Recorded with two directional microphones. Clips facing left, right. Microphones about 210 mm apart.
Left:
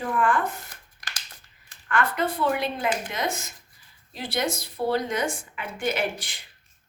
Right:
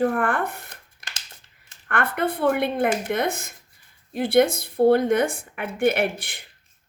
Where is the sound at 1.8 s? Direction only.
60° right (ahead or behind).